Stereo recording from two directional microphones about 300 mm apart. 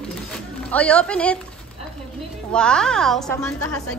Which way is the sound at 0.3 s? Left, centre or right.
Centre.